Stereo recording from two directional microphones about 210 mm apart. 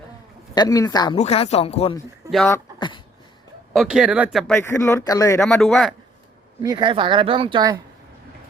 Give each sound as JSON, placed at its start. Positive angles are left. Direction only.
{"t": 0.5, "sound": "speech", "side_deg": 15}
{"t": 1.2, "sound": "speech", "side_deg": 30}
{"t": 2.7, "sound": "a sound", "side_deg": 20}
{"t": 3.7, "sound": "speech", "side_deg": 0}
{"t": 4.5, "sound": "speech", "side_deg": 10}
{"t": 5.4, "sound": "speech", "side_deg": 0}
{"t": 6.6, "sound": "speech", "side_deg": -20}